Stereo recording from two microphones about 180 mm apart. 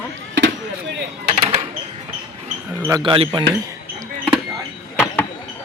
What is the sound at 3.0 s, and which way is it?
Speech, 30° right (ahead or behind).